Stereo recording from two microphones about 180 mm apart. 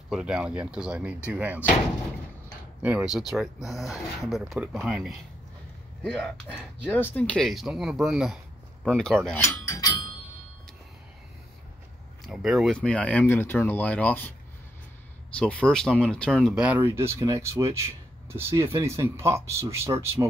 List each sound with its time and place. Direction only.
0.1 s speech: 5° right (ahead or behind)
2.8 s speech: 5° right (ahead or behind)
6.9 s speech: 10° left (ahead or behind)
9.4 s cutlery: 20° left (ahead or behind)
12.3 s speech: 5° right (ahead or behind)
15.3 s speech: 5° left (ahead or behind); by 20.2 s 15° right (ahead or behind)